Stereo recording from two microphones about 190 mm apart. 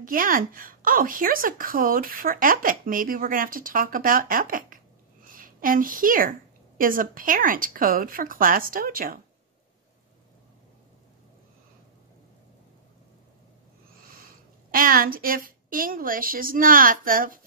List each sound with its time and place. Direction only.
0.0 s a woman's voice: 45° right (ahead or behind)
14.7 s a woman's voice: 50° right (ahead or behind)